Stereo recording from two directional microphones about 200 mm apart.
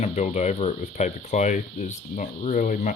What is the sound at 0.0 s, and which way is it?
Speech, 35° left (ahead or behind).